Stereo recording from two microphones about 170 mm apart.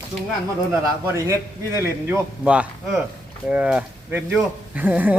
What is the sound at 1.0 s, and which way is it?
Speech, 15° right (ahead or behind).